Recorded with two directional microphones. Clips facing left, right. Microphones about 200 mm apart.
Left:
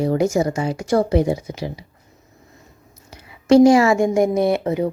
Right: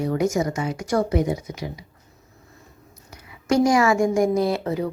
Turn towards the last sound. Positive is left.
turn(degrees=20)  # may be behind; listen again after turning